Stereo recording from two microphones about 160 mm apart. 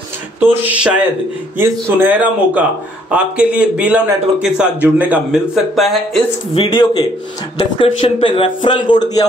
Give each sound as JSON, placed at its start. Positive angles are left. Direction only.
{"t": 0.4, "sound": "a man's voice", "side_deg": -10}
{"t": 6.5, "sound": "speech", "side_deg": 35}